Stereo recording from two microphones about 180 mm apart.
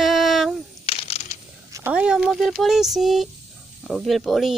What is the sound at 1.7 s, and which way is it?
Speech, 10° right (ahead or behind).